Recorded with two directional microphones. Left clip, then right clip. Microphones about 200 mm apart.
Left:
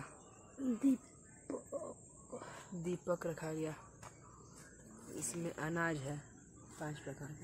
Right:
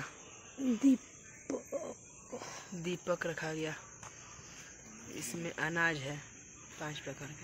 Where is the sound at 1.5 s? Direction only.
20° right (ahead or behind).